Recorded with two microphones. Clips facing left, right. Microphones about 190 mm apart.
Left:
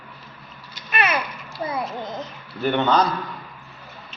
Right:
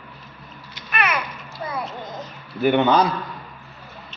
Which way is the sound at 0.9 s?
25° left (ahead or behind).